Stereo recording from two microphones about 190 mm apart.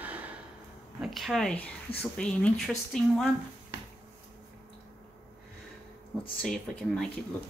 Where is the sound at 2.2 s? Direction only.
5° left (ahead or behind).